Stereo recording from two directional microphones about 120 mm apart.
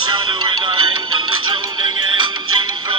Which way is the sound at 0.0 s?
40° right (ahead or behind).